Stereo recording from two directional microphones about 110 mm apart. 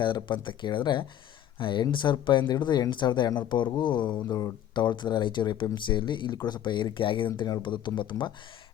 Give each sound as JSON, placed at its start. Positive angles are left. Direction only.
{"t": 0.0, "sound": "speech", "side_deg": 45}